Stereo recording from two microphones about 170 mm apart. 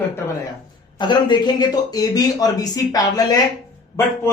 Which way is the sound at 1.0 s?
25° left (ahead or behind).